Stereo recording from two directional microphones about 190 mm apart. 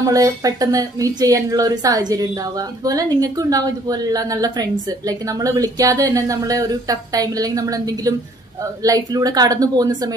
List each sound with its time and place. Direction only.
0.0 s a woman's voice: 20° right (ahead or behind)